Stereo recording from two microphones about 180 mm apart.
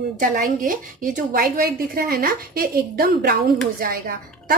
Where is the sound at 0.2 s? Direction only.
50° right (ahead or behind).